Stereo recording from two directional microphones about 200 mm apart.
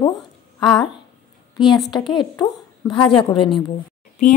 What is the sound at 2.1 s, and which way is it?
Speech, 20° left (ahead or behind).